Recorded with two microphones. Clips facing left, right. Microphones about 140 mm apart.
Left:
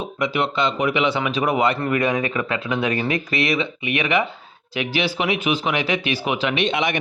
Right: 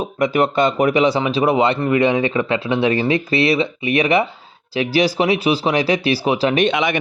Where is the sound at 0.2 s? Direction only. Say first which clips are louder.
Right 6 dB; 50° right (ahead or behind).